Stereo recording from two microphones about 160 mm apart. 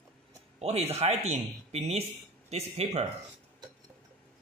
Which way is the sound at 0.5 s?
40° right (ahead or behind).